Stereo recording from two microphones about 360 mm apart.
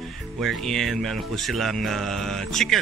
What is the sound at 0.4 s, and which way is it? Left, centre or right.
Speech, centre.